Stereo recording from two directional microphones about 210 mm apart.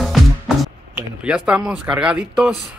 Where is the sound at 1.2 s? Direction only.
5° right (ahead or behind).